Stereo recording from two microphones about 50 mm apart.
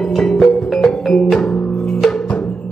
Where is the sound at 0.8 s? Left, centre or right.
Centre.